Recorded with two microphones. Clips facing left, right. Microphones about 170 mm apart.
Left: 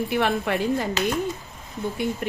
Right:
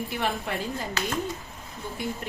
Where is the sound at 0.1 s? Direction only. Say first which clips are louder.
Left 7 dB; 75° left (ahead or behind).